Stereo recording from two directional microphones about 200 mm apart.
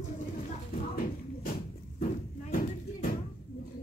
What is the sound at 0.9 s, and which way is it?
Music, 45° left (ahead or behind).